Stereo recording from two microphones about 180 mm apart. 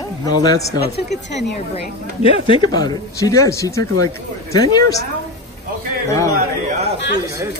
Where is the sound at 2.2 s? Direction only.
25° left (ahead or behind).